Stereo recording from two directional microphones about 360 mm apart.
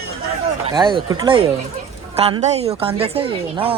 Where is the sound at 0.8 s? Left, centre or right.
Centre.